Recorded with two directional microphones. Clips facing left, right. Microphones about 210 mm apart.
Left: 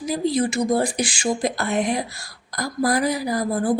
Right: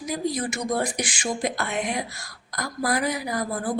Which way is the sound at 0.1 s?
30° left (ahead or behind).